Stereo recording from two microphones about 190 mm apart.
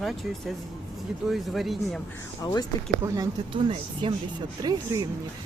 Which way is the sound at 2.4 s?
20° left (ahead or behind).